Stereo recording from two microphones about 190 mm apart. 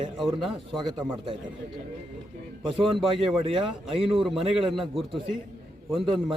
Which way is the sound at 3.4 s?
30° right (ahead or behind).